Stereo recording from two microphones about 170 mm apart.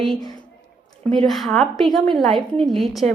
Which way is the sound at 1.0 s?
Centre (ahead or behind).